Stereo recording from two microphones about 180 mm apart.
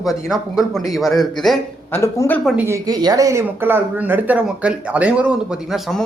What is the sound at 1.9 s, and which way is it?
Speech, 15° left (ahead or behind).